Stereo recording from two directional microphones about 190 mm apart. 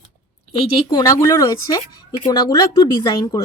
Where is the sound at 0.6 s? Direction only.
25° left (ahead or behind).